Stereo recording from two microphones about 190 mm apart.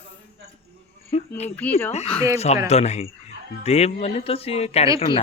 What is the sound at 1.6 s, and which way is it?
Speech, 10° left (ahead or behind).